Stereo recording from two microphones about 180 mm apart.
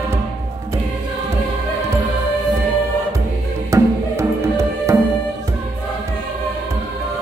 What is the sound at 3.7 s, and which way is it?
Music, 15° right (ahead or behind).